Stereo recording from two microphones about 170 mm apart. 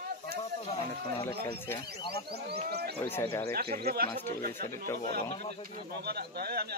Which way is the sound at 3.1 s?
15° left (ahead or behind).